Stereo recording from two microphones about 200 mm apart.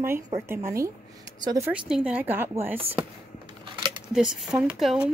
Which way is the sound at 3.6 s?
25° right (ahead or behind).